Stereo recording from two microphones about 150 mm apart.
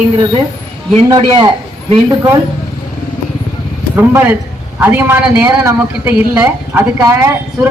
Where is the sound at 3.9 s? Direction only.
15° right (ahead or behind).